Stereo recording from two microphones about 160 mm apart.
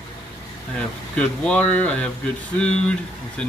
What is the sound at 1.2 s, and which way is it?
Speech, 10° left (ahead or behind).